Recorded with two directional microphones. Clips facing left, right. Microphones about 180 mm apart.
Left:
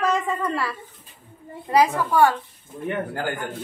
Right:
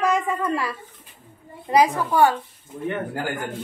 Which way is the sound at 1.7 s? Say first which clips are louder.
Right 1 dB; 15° right (ahead or behind).